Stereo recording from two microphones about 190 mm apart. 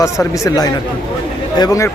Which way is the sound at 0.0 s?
20° left (ahead or behind).